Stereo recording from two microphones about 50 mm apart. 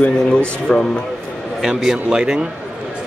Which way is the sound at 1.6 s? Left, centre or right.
Centre.